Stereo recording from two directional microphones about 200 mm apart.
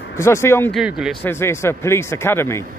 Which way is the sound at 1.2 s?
10° left (ahead or behind).